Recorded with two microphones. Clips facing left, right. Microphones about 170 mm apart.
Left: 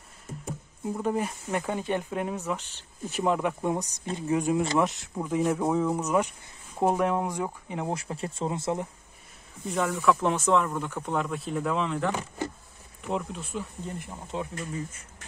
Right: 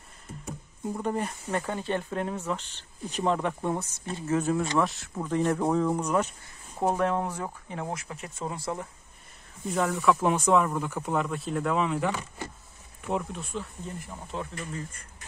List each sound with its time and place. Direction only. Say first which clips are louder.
0.9 s speech: left 2 dB; 5° left (ahead or behind)
5.2 s speech: even; 10° left (ahead or behind)
7.9 s speech: left 4 dB; 30° left (ahead or behind)
9.7 s speech: even; centre (ahead or behind)
14.3 s speech: left 2 dB; 20° left (ahead or behind)
14.7 s speech: left 2 dB; 5° left (ahead or behind)